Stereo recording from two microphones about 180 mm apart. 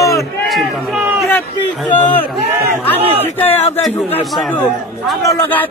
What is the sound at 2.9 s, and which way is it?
Speech, 35° right (ahead or behind).